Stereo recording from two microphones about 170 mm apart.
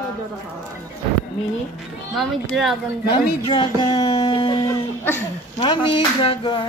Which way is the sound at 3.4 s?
25° left (ahead or behind).